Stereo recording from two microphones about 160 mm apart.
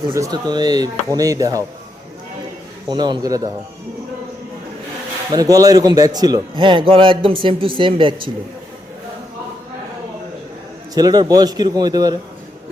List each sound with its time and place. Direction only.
0.1 s speech: 25° right (ahead or behind)
2.9 s speech: 30° right (ahead or behind)
5.3 s a man's voice: 20° right (ahead or behind)
10.9 s speech: 25° right (ahead or behind)